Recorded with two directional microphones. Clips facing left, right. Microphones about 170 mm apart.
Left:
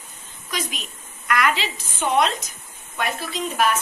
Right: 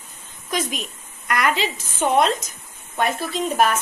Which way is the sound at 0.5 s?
45° right (ahead or behind).